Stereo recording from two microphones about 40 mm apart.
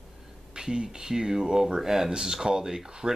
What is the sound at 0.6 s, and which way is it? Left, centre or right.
Speech, centre.